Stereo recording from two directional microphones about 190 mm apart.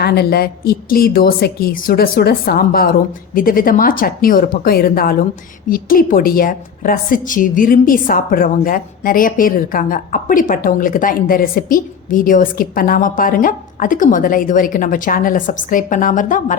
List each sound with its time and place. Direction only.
0.0 s a woman's voice: 55° left (ahead or behind)